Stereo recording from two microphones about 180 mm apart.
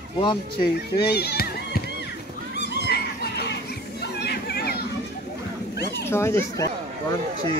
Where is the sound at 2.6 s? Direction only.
70° left (ahead or behind).